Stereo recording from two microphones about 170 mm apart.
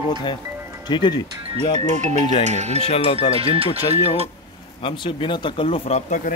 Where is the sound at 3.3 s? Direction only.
35° right (ahead or behind).